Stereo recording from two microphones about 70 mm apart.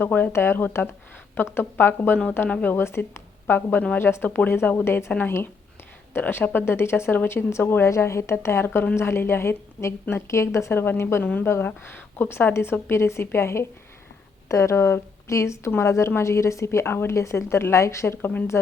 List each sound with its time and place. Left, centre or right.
0.0 s speech: left
3.4 s a woman's voice: left
6.1 s a woman's voice: left
10.8 s a woman's voice: left
11.2 s speech: left
11.4 s a woman's voice: left
16.6 s a woman's voice: left